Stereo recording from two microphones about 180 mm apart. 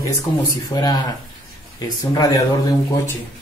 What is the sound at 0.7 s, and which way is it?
A man's voice, 20° left (ahead or behind).